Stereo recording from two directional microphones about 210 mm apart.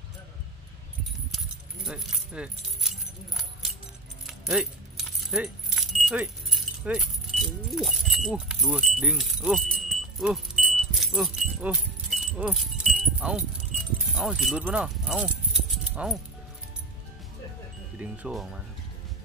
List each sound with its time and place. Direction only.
1.9 s keys jangling: centre (ahead or behind)
14.0 s speech: centre (ahead or behind)
17.9 s speech: 5° right (ahead or behind)